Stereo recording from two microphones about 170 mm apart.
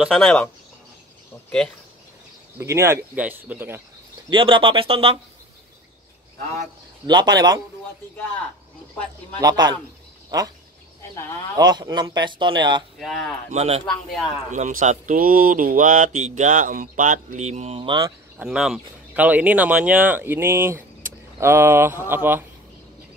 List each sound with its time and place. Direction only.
0.0 s speech: 5° left (ahead or behind)
2.6 s speech: 15° right (ahead or behind)
4.3 s speech: 30° right (ahead or behind)
7.1 s a man's voice: 25° right (ahead or behind)
9.4 s a man's voice: 25° right (ahead or behind)
11.0 s speech: 15° left (ahead or behind)
11.5 s a man's voice: 25° right (ahead or behind)
13.0 s speech: 5° left (ahead or behind)
13.5 s speech: 40° right (ahead or behind)
14.5 s speech: 50° right (ahead or behind); by 18.1 s 25° right (ahead or behind)
18.4 s speech: 5° right (ahead or behind)